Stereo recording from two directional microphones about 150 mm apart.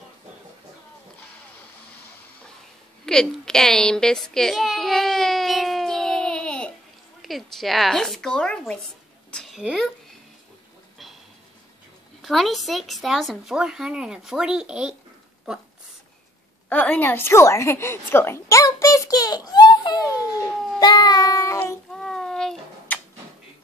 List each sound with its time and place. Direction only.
3.1 s a sound: 5° left (ahead or behind)
7.2 s a child's voice: centre (ahead or behind)
12.2 s speech: centre (ahead or behind)
16.6 s a woman's voice: 10° left (ahead or behind)
20.8 s child singing: 30° left (ahead or behind)
21.9 s cat: 5° left (ahead or behind)